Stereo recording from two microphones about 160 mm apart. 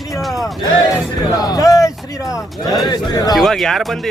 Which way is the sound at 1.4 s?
25° left (ahead or behind).